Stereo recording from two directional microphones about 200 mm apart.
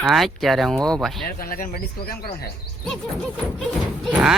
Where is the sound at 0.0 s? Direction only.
Centre (ahead or behind).